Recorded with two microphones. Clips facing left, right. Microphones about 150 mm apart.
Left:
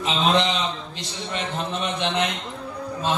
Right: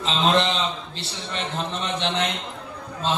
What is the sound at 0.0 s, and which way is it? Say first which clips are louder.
Speech: even; 15° left (ahead or behind).